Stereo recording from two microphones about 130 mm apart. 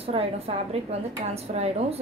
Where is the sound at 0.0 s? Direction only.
50° right (ahead or behind).